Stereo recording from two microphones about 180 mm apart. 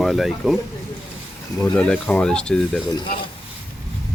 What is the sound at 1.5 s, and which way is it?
Speech, 5° left (ahead or behind).